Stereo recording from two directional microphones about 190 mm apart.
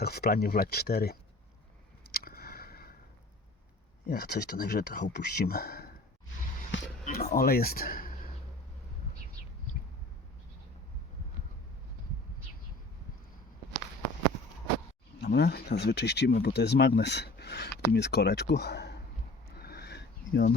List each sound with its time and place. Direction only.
0.0 s speech: 55° left (ahead or behind)
2.1 s a sound: 50° left (ahead or behind)
4.0 s speech: 55° left (ahead or behind)
7.0 s speech: 50° left (ahead or behind)
15.2 s speech: 60° left (ahead or behind)
19.5 s sniff: 55° left (ahead or behind)